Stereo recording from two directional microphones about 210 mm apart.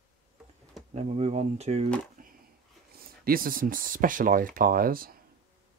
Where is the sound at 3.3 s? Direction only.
45° right (ahead or behind).